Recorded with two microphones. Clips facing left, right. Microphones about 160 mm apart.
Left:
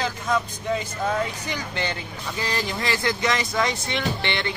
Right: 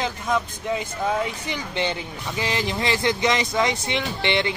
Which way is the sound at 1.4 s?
20° right (ahead or behind).